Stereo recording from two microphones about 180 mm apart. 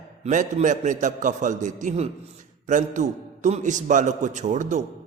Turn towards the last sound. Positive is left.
turn(degrees=-40)  # may be behind; listen again after turning